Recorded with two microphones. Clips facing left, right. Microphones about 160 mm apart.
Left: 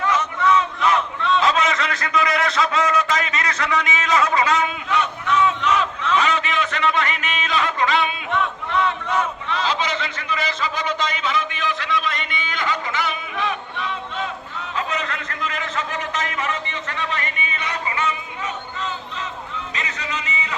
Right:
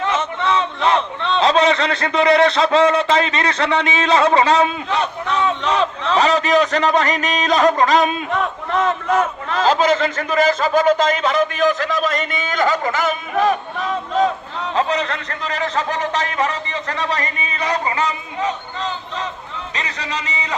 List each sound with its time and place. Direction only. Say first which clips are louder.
0.0 s a man's voice: even; 25° right (ahead or behind)